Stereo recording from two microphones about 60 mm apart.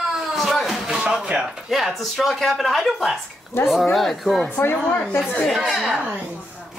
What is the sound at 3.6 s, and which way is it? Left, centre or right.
Speech, left.